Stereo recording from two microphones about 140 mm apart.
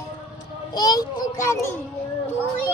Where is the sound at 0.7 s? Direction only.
30° left (ahead or behind).